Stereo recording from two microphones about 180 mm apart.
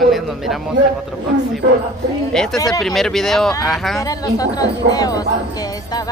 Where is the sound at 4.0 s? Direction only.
20° left (ahead or behind).